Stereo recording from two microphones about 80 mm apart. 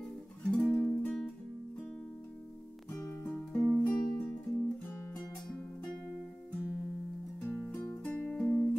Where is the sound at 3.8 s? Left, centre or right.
Centre.